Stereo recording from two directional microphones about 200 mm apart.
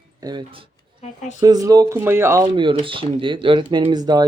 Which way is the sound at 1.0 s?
35° left (ahead or behind).